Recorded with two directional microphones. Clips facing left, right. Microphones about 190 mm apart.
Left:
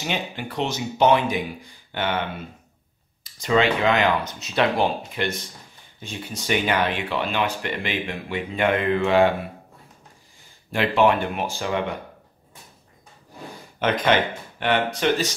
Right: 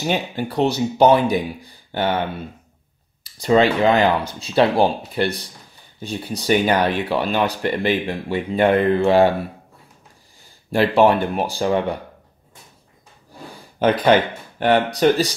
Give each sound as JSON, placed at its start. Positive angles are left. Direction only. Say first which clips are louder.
{"t": 0.0, "sound": "speech", "louder": "right 6 dB", "side_deg": -35}
{"t": 3.3, "sound": "speech", "louder": "right 5 dB", "side_deg": -35}
{"t": 10.7, "sound": "speech", "louder": "right 4 dB", "side_deg": -35}
{"t": 13.7, "sound": "speech", "louder": "right 5 dB", "side_deg": -35}